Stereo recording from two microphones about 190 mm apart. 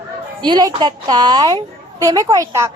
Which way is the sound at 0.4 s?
25° right (ahead or behind).